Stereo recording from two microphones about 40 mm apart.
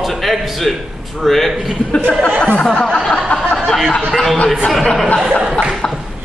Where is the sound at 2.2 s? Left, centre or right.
Left.